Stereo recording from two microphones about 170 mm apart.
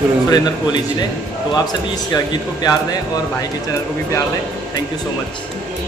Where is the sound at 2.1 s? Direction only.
20° left (ahead or behind).